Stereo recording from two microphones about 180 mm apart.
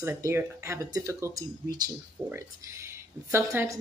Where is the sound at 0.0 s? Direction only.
15° right (ahead or behind).